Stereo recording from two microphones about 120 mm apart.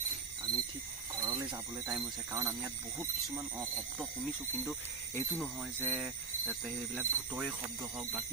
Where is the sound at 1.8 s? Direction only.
20° right (ahead or behind).